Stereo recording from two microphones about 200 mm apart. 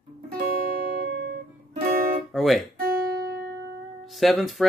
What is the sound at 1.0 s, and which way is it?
Music, 50° right (ahead or behind).